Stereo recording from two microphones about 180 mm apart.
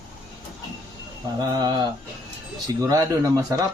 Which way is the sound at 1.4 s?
20° right (ahead or behind).